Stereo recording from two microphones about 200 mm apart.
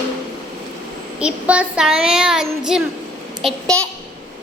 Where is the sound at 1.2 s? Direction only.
5° right (ahead or behind).